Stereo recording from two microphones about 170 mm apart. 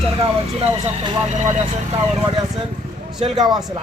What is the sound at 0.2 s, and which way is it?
Speech, 30° right (ahead or behind).